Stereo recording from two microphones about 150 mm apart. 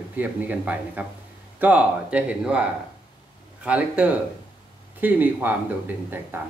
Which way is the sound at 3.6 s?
10° right (ahead or behind).